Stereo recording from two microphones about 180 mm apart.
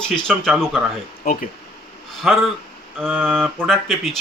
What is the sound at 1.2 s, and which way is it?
Speech, 50° left (ahead or behind).